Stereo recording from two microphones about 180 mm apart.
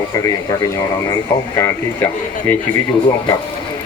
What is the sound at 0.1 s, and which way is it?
Speech, 20° left (ahead or behind).